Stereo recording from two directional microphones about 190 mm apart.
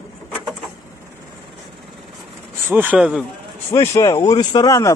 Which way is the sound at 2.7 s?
10° right (ahead or behind).